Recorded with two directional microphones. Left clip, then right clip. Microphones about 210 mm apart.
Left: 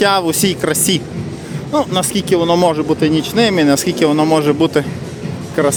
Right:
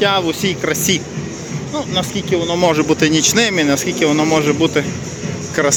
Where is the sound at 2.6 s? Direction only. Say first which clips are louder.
Even; 10° left (ahead or behind).